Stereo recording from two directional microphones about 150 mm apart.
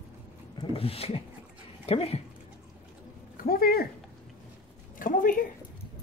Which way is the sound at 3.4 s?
80° left.